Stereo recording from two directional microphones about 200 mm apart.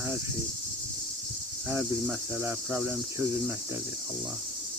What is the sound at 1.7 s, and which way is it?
Cricket, 10° right (ahead or behind).